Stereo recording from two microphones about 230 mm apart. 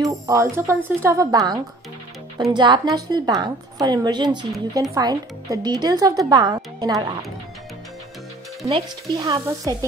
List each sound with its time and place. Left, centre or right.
0.0 s a woman's voice: centre
8.6 s speech: right